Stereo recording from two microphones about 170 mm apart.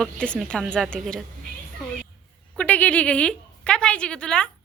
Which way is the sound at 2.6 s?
10° left (ahead or behind).